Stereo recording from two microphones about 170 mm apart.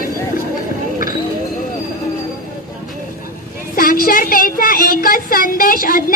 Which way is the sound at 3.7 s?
55° left (ahead or behind).